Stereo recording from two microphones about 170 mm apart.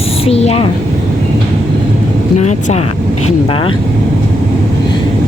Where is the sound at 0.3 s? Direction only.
35° left (ahead or behind).